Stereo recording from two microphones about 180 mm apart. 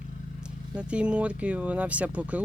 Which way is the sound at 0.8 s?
5° right (ahead or behind).